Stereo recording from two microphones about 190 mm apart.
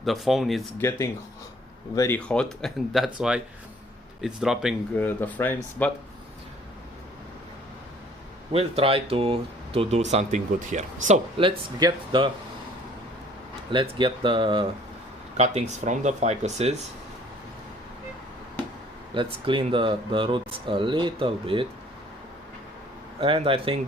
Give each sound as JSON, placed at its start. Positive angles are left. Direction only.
{"t": 0.0, "sound": "speech", "side_deg": 0}
{"t": 0.8, "sound": "speech", "side_deg": 15}
{"t": 4.9, "sound": "speech", "side_deg": 10}
{"t": 8.5, "sound": "speech", "side_deg": -30}
{"t": 11.1, "sound": "speech", "side_deg": -30}
{"t": 13.7, "sound": "speech", "side_deg": -25}
{"t": 15.4, "sound": "speech", "side_deg": -35}
{"t": 19.1, "sound": "speech", "side_deg": -25}
{"t": 23.2, "sound": "speech", "side_deg": -30}